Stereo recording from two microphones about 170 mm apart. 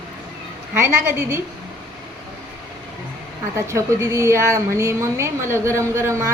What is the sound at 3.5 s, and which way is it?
A woman's voice, 15° right (ahead or behind).